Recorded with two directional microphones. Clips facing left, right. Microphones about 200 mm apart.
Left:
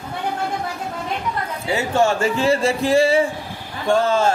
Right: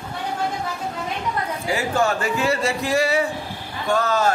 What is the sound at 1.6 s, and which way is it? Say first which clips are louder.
Speech: left 3 dB; 25° left (ahead or behind).